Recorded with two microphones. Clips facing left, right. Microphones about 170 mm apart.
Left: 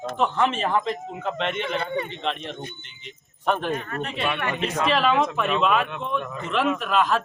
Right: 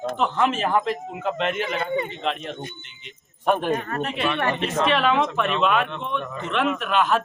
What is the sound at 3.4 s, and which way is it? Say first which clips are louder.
Speech: right 3 dB; 10° right (ahead or behind).